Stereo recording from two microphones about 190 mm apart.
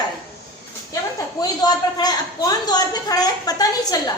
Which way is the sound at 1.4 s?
20° left (ahead or behind).